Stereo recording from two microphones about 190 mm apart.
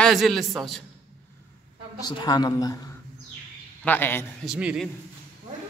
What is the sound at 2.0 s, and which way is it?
A woman's voice, 20° left (ahead or behind).